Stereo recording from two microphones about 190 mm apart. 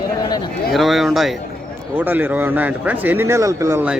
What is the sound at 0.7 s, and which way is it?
A man's voice, centre (ahead or behind).